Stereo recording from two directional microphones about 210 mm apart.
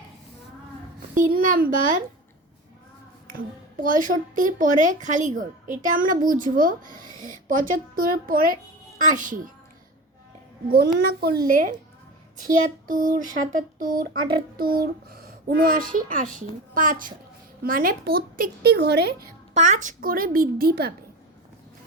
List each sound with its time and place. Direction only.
1.1 s a woman's voice: 40° right (ahead or behind)
3.2 s a woman's voice: 40° right (ahead or behind)
10.7 s a child's voice: 45° right (ahead or behind)
19.5 s a child's voice: 35° right (ahead or behind)